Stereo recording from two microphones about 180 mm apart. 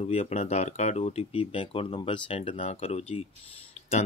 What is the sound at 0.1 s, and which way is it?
Speech, 35° left (ahead or behind).